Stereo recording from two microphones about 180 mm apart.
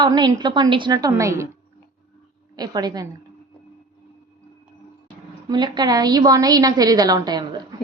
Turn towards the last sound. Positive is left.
turn(degrees=-25)  # may be behind; listen again after turning